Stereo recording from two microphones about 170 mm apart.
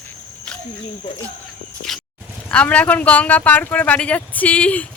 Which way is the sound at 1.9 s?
Centre (ahead or behind).